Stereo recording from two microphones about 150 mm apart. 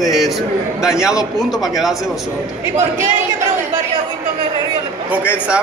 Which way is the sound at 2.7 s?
50° right (ahead or behind).